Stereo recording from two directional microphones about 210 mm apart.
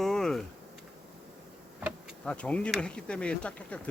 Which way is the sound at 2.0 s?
5° left (ahead or behind).